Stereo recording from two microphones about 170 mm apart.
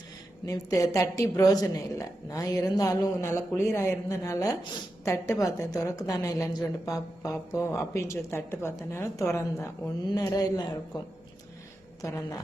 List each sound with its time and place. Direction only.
0.4 s a woman's voice: 20° left (ahead or behind)